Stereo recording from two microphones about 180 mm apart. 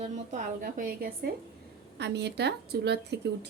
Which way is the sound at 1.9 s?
70° right (ahead or behind).